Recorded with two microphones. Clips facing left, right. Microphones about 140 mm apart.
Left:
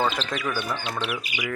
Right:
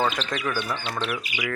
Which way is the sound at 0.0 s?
5° left (ahead or behind).